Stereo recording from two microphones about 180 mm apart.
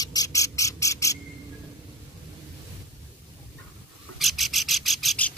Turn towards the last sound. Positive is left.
turn(degrees=5)  # may be behind; listen again after turning